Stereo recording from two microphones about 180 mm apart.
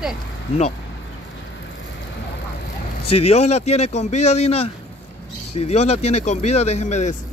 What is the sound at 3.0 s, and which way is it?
Speech, 35° left (ahead or behind).